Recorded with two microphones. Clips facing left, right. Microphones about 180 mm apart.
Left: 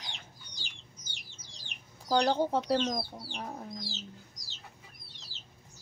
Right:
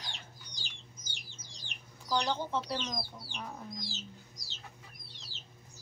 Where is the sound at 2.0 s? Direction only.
45° left (ahead or behind).